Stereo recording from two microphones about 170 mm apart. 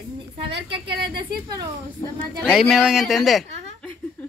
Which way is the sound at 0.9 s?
70° right (ahead or behind).